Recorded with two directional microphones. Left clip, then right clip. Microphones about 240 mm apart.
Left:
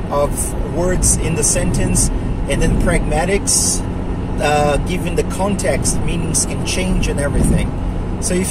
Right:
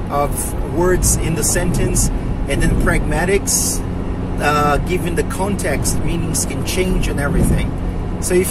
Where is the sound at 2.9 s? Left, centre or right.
Centre.